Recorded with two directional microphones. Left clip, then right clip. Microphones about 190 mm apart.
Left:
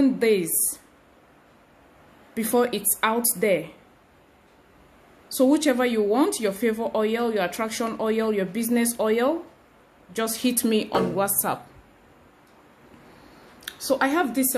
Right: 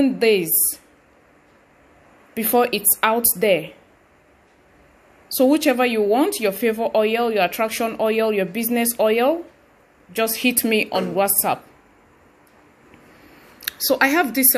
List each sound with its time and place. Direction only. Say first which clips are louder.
0.0 s speech: right 4 dB; 10° right (ahead or behind)
2.3 s speech: right 4 dB; 10° right (ahead or behind)
5.3 s speech: right 4 dB; 5° right (ahead or behind)
13.6 s a woman's voice: right 5 dB; 15° right (ahead or behind)